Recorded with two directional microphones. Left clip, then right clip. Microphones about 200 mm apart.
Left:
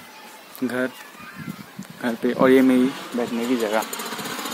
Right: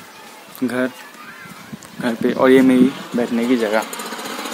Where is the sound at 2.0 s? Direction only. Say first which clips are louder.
Right 3 dB; 5° right (ahead or behind).